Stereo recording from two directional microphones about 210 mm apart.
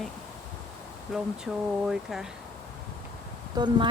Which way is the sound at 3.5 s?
20° right (ahead or behind).